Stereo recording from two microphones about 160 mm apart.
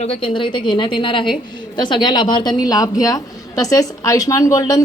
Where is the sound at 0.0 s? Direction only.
35° left (ahead or behind).